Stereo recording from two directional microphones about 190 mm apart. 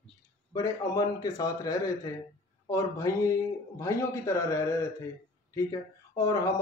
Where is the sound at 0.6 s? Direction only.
20° left (ahead or behind).